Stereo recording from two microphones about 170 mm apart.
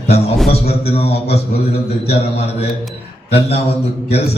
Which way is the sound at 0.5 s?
35° left (ahead or behind).